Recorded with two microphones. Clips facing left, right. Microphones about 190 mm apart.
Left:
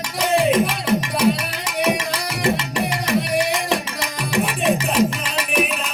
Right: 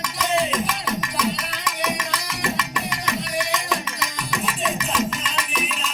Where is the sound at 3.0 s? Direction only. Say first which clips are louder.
Left 7 dB; 30° left (ahead or behind).